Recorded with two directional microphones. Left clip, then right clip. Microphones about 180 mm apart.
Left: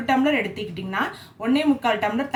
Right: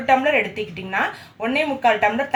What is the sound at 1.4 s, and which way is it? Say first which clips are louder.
Speech: right 2 dB; 20° right (ahead or behind).